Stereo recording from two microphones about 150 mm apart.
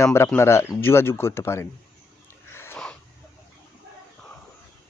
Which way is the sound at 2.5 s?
15° left (ahead or behind).